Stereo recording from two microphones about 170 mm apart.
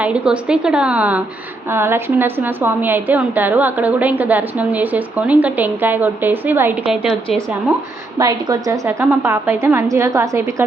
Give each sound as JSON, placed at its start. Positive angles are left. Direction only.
{"t": 0.0, "sound": "a woman's voice", "side_deg": -5}
{"t": 8.2, "sound": "a woman's voice", "side_deg": -20}